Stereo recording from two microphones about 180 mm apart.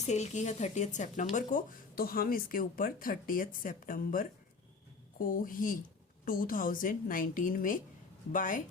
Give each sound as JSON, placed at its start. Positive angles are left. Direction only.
{"t": 0.1, "sound": "a woman's voice", "side_deg": 40}